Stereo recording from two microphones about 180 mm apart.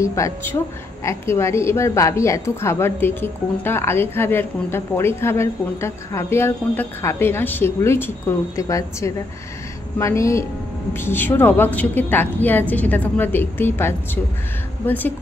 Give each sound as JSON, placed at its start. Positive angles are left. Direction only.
{"t": 0.0, "sound": "a woman's voice", "side_deg": 15}